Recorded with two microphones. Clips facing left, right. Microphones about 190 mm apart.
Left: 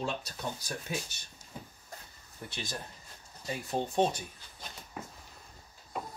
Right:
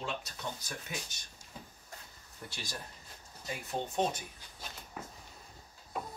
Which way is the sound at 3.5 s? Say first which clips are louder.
Left 4 dB; 30° left (ahead or behind).